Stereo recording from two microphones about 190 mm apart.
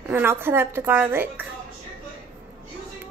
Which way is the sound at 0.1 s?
10° right (ahead or behind).